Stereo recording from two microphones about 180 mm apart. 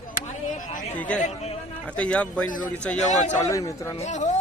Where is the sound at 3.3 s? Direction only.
15° left (ahead or behind).